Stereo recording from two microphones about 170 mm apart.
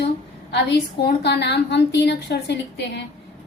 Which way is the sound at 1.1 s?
70° left (ahead or behind).